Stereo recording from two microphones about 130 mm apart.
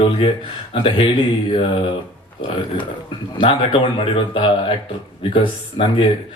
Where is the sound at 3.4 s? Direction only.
45° left (ahead or behind).